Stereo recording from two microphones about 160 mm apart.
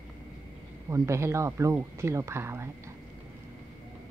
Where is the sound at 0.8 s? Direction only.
20° right (ahead or behind).